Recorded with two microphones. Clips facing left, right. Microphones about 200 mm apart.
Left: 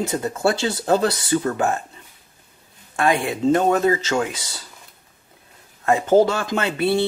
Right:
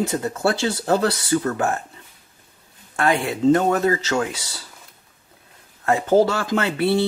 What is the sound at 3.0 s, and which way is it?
Speech, 15° left (ahead or behind).